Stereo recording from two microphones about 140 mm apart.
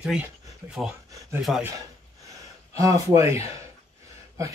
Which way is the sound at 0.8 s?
15° right (ahead or behind).